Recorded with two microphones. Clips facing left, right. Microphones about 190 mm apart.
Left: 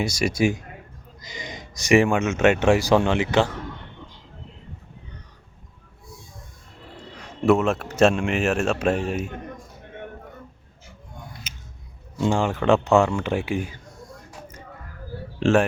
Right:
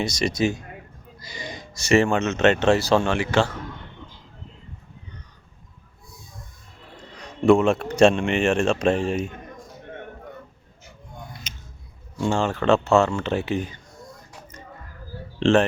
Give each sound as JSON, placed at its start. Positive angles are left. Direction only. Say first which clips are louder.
{"t": 0.0, "sound": "speech", "louder": "left 1 dB", "side_deg": 10}
{"t": 7.2, "sound": "speech", "louder": "right 2 dB", "side_deg": 5}
{"t": 11.5, "sound": "a sound", "louder": "right 1 dB", "side_deg": 5}
{"t": 12.2, "sound": "speech", "louder": "left 1 dB", "side_deg": 15}
{"t": 15.4, "sound": "speech", "louder": "right 1 dB", "side_deg": 10}